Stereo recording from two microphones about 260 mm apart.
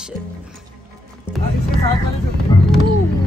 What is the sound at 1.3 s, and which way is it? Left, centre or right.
Music, centre.